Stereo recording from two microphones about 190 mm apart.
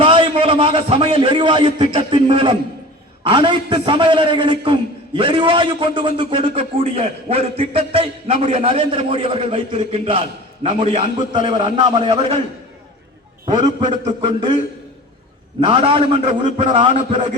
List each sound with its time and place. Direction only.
0.0 s a man's voice: 25° right (ahead or behind)
13.7 s a man's voice: 25° right (ahead or behind)
15.6 s a man's voice: 30° right (ahead or behind)